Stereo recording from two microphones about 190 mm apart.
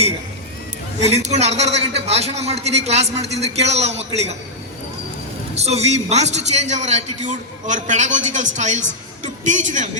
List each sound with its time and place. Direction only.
1.0 s a man's voice: 35° right (ahead or behind)
5.5 s a man's voice: 35° right (ahead or behind)